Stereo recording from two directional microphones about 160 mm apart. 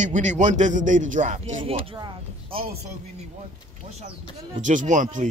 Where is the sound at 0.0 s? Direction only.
50° right (ahead or behind).